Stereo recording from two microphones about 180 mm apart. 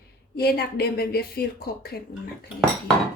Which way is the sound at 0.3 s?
60° left (ahead or behind).